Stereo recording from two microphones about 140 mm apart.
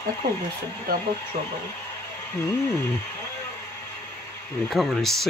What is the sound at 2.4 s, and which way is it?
Speech, 20° left (ahead or behind).